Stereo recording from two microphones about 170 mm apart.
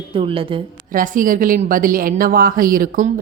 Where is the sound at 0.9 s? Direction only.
50° right (ahead or behind).